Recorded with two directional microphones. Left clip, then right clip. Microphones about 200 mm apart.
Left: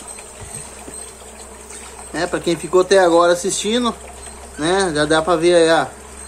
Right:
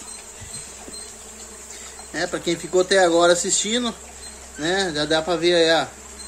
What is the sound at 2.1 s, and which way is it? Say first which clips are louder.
Speech: left 4 dB; 15° right (ahead or behind).